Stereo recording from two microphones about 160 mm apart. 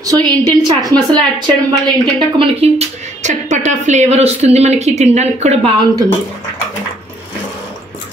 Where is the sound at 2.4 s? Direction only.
40° right (ahead or behind).